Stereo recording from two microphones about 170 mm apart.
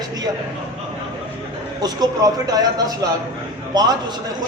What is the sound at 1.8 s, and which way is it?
A man's voice, 20° right (ahead or behind).